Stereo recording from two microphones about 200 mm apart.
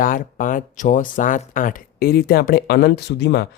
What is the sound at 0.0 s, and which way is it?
Speech, 45° left (ahead or behind).